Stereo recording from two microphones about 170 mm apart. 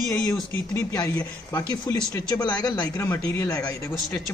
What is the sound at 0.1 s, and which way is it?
Speech, 15° left (ahead or behind).